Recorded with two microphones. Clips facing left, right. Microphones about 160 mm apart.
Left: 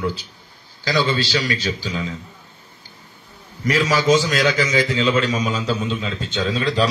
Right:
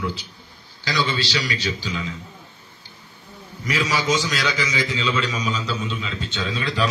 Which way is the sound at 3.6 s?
45° left (ahead or behind).